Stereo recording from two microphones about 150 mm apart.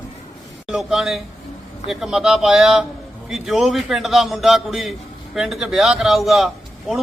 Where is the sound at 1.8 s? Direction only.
5° right (ahead or behind).